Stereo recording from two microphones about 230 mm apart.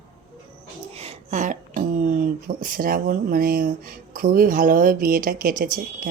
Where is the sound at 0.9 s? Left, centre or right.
Right.